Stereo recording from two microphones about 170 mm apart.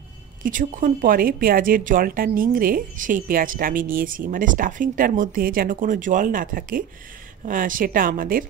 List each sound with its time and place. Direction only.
0.4 s speech: 50° right (ahead or behind)